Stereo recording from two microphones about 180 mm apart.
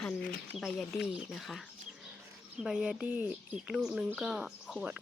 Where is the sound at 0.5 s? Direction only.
5° left (ahead or behind).